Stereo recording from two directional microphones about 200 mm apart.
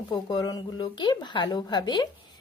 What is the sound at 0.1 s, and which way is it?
A woman's voice, 20° left (ahead or behind).